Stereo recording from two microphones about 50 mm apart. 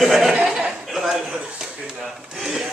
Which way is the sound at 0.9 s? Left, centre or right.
Centre.